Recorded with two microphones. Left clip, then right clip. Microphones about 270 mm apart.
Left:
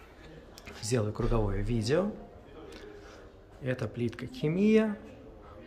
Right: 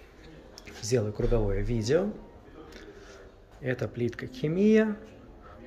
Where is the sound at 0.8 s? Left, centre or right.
Centre.